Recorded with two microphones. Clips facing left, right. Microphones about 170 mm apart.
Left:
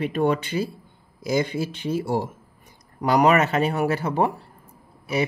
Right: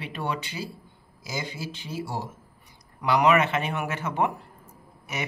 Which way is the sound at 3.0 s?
40° left (ahead or behind).